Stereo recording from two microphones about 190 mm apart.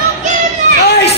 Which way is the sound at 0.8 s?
60° left (ahead or behind).